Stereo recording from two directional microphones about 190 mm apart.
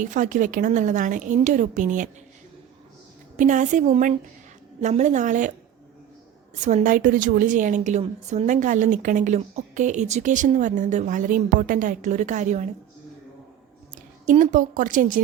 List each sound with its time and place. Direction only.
0.0 s a woman's voice: 40° right (ahead or behind)
3.3 s a woman's voice: 40° right (ahead or behind)
6.6 s a woman's voice: 40° right (ahead or behind)
14.3 s speech: 40° right (ahead or behind)